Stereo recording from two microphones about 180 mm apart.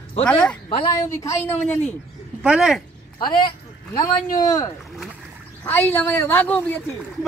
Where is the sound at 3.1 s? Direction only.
25° left (ahead or behind); by 6.8 s 10° left (ahead or behind).